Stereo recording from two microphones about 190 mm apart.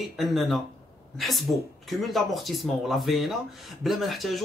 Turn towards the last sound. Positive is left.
turn(degrees=0)  # may be behind; listen again after turning